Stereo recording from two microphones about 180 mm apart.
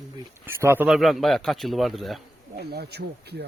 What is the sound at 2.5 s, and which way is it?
Speech, 60° right (ahead or behind).